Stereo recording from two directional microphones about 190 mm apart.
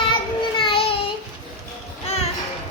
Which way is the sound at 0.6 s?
30° left (ahead or behind).